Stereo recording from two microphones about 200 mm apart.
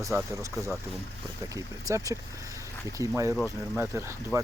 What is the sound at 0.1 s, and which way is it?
Speech, 15° right (ahead or behind).